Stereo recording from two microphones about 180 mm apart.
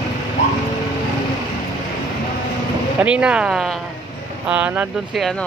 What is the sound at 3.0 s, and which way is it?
Speech, 5° right (ahead or behind).